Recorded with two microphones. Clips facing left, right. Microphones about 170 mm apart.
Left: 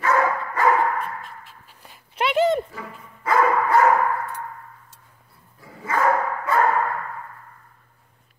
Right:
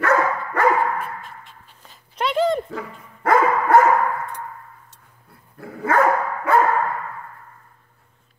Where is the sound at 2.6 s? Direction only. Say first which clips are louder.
Right 5 dB; 55° right (ahead or behind).